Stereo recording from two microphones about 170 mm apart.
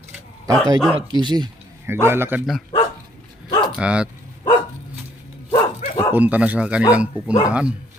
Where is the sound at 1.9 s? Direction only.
15° right (ahead or behind).